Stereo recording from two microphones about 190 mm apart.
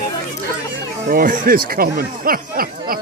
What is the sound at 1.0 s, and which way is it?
Speech, 50° right (ahead or behind).